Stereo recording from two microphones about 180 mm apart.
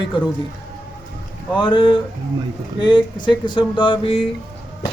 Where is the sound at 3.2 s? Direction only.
25° left (ahead or behind).